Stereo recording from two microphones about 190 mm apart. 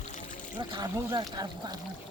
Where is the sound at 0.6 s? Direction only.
20° right (ahead or behind).